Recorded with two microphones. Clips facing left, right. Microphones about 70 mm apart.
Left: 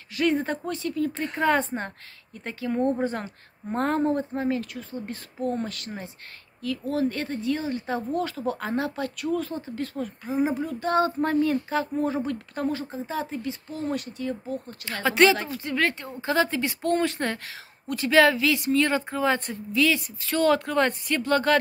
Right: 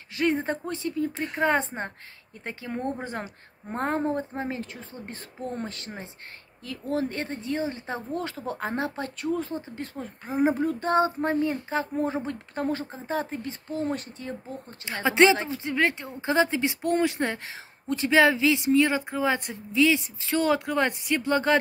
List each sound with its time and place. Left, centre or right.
0.1 s speech: right
1.1 s speech: centre
1.4 s speech: right
10.2 s speech: right
10.9 s speech: right